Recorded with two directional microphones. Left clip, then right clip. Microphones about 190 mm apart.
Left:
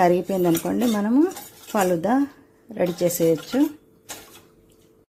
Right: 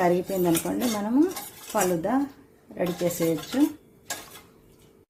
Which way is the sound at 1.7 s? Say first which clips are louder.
Left 4 dB; 50° left (ahead or behind).